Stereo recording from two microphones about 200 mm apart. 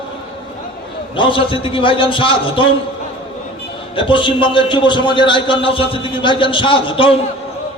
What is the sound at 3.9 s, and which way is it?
A man's voice, 25° left (ahead or behind).